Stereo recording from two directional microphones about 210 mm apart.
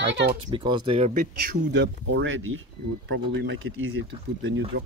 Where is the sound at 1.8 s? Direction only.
65° right (ahead or behind).